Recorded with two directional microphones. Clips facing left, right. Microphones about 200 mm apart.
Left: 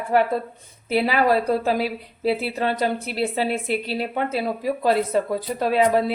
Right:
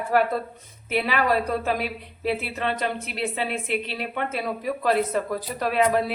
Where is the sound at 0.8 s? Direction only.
35° left (ahead or behind).